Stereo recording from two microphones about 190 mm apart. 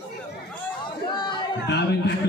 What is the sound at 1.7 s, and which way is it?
Speech, 60° left (ahead or behind).